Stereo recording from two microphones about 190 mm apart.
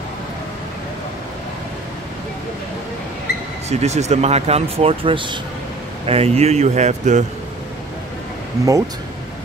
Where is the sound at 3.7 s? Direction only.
35° right (ahead or behind).